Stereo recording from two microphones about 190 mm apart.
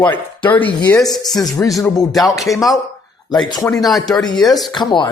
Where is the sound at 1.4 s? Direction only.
20° left (ahead or behind).